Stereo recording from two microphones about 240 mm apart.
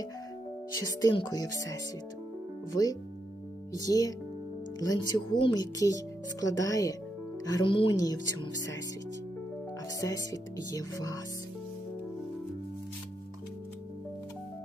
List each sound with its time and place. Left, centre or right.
0.7 s speech: centre
10.0 s speech: centre